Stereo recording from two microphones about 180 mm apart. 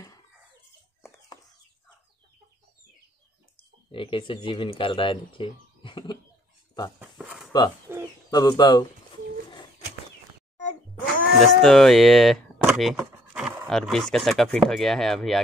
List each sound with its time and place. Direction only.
1.0 s chicken: 15° left (ahead or behind)
3.9 s speech: 30° left (ahead or behind)
7.0 s a sound: 5° right (ahead or behind)
7.9 s bird: 10° right (ahead or behind)
8.3 s speech: 20° left (ahead or behind)
11.3 s speech: centre (ahead or behind)